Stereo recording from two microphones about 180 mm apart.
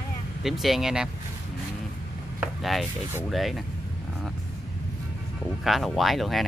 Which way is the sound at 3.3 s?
Centre (ahead or behind).